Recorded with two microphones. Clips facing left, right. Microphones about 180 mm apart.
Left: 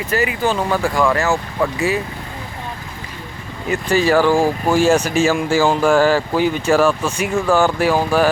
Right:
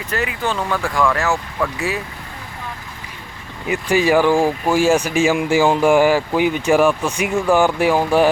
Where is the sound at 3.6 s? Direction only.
15° right (ahead or behind).